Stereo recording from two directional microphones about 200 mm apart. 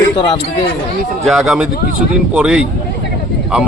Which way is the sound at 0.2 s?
25° left (ahead or behind).